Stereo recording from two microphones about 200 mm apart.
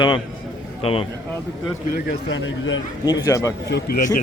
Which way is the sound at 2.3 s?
70° left (ahead or behind).